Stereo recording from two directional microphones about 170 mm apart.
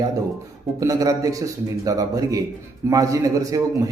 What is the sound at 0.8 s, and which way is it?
A man's voice, 20° right (ahead or behind).